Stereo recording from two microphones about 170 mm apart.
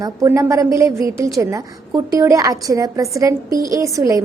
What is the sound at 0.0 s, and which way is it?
A woman's voice, 20° right (ahead or behind).